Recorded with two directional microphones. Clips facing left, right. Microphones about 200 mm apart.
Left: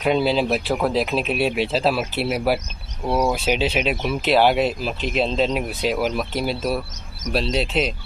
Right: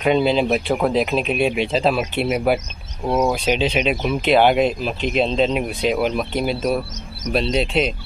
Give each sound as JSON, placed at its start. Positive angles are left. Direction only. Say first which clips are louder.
{"t": 0.0, "sound": "speech", "louder": "right 2 dB", "side_deg": 0}
{"t": 3.3, "sound": "speech", "louder": "right 2 dB", "side_deg": 5}